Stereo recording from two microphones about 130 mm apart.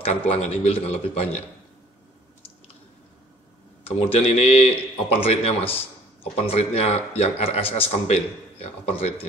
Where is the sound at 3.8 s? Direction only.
45° left (ahead or behind).